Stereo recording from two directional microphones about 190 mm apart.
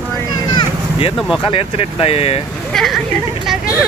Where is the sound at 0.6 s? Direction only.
25° left (ahead or behind).